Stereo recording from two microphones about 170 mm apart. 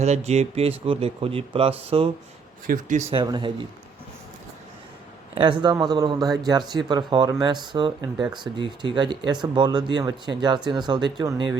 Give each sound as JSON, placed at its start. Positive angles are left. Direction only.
{"t": 0.0, "sound": "speech", "side_deg": -40}
{"t": 2.6, "sound": "speech", "side_deg": -50}
{"t": 3.1, "sound": "speech", "side_deg": -30}
{"t": 5.3, "sound": "speech", "side_deg": -30}